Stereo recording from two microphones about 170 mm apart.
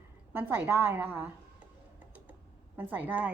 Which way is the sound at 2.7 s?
10° right (ahead or behind).